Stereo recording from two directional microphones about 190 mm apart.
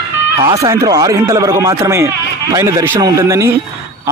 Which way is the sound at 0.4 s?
20° right (ahead or behind).